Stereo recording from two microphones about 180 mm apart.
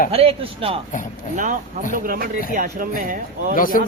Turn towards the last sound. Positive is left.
turn(degrees=50)  # may be behind; listen again after turning